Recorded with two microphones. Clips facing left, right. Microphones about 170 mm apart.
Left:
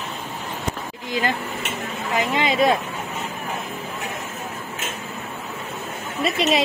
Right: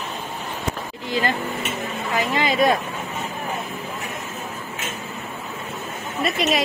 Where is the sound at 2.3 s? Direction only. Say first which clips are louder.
Even; 20° left (ahead or behind).